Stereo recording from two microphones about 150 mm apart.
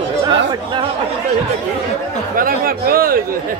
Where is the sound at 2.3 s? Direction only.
70° right (ahead or behind).